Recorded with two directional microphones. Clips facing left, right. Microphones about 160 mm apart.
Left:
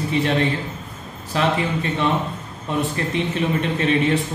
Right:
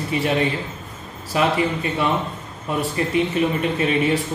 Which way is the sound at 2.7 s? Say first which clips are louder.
Even; 5° right (ahead or behind).